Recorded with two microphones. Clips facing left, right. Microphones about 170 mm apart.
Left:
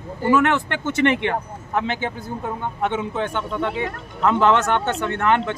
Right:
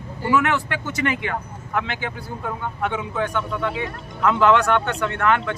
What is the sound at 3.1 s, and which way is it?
Speech, 25° left (ahead or behind).